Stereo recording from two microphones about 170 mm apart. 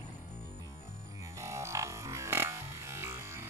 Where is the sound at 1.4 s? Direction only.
15° right (ahead or behind).